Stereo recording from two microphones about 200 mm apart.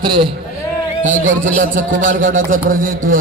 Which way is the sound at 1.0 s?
40° right (ahead or behind).